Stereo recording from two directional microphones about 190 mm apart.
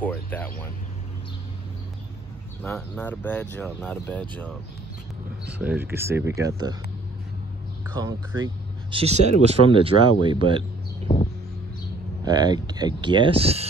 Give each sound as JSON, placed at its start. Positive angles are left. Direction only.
{"t": 0.0, "sound": "speech", "side_deg": 10}
{"t": 2.6, "sound": "speech", "side_deg": 10}
{"t": 5.6, "sound": "speech", "side_deg": -10}
{"t": 7.9, "sound": "speech", "side_deg": -20}
{"t": 8.9, "sound": "speech", "side_deg": -35}
{"t": 12.3, "sound": "speech", "side_deg": -20}